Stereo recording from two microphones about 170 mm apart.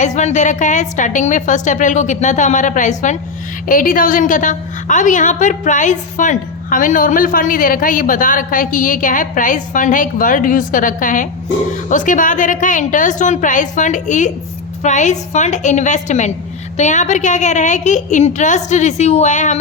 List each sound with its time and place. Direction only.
0.0 s a woman's voice: 45° left (ahead or behind)